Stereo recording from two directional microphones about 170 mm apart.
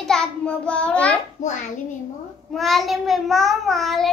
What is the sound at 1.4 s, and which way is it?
Speech, 45° left (ahead or behind).